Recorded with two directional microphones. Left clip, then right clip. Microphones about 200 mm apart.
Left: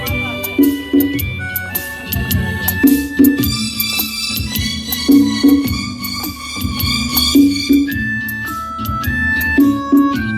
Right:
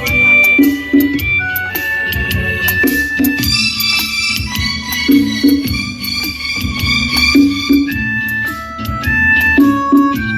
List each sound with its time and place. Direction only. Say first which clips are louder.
0.4 s music: right 6 dB; 45° left (ahead or behind)
2.6 s music: right 1 dB; 70° left (ahead or behind); by 4.3 s 45° left (ahead or behind)
5.0 s music: left 1 dB; centre (ahead or behind)
6.8 s music: right 4 dB; 20° right (ahead or behind)
9.0 s music: right 7 dB; 40° right (ahead or behind)